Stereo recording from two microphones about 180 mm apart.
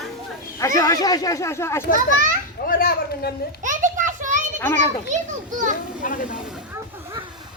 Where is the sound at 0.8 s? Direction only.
20° left (ahead or behind).